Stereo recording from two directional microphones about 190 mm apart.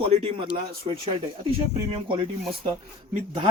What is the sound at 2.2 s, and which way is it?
Speech, 25° right (ahead or behind).